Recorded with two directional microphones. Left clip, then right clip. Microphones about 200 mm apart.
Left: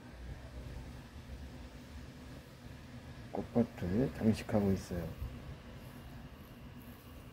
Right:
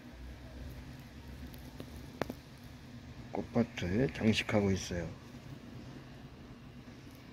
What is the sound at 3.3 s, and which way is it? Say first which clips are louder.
Speech: right 1 dB; 20° right (ahead or behind).